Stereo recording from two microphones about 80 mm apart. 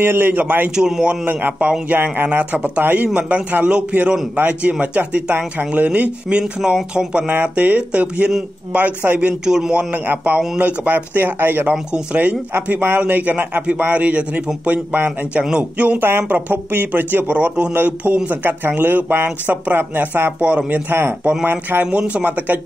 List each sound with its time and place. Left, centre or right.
0.0 s a man's voice: right
0.7 s a man's voice: centre
1.2 s a man's voice: centre
9.5 s a man's voice: centre; by 11.7 s right
11.7 s a man's voice: centre
21.5 s a man's voice: right